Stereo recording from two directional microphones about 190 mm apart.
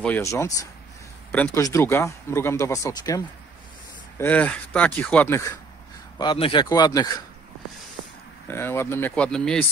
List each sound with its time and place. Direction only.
0.0 s speech: 10° left (ahead or behind)
4.2 s speech: 10° left (ahead or behind)
6.1 s speech: 25° left (ahead or behind)
8.5 s speech: 10° left (ahead or behind)